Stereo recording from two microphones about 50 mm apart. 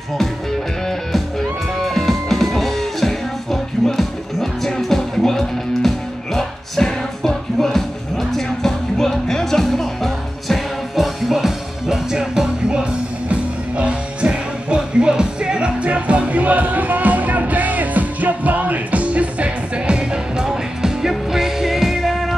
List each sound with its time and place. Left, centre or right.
1.8 s music: centre
13.3 s music: right; by 22.3 s centre